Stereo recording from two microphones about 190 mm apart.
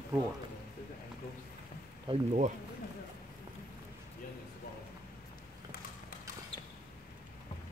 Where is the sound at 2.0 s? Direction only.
35° right (ahead or behind).